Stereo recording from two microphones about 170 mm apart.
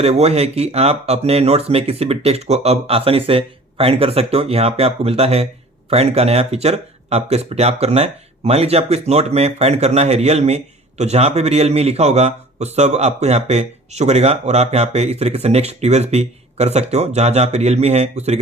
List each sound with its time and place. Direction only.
0.0 s speech: 40° right (ahead or behind)